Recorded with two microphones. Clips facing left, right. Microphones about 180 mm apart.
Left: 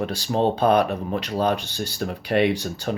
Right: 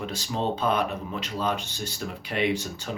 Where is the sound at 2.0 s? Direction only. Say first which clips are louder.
Left 7 dB; 65° left (ahead or behind).